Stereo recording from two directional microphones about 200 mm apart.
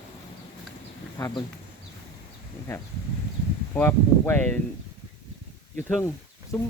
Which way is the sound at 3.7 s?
10° left (ahead or behind).